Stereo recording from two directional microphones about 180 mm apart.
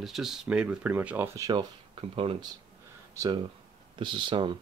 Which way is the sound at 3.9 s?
25° right (ahead or behind).